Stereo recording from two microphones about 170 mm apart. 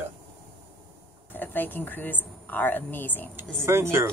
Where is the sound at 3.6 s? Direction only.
15° right (ahead or behind).